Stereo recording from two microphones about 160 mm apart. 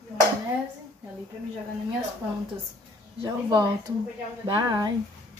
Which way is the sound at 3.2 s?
25° right (ahead or behind).